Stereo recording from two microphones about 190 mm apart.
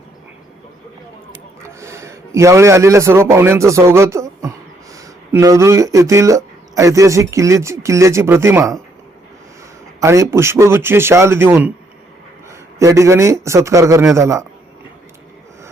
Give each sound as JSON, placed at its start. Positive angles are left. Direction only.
{"t": 1.6, "sound": "a man's voice", "side_deg": -15}
{"t": 10.0, "sound": "a man's voice", "side_deg": -15}